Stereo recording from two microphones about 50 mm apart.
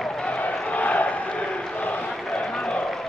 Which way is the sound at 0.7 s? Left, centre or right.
Left.